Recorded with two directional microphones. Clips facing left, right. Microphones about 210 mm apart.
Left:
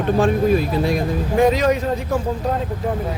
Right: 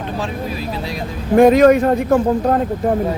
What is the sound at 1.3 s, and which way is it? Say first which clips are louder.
A man's voice: right 8 dB; 55° right (ahead or behind).